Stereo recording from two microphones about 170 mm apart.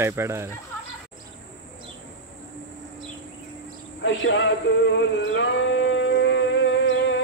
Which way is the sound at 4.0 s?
90° left.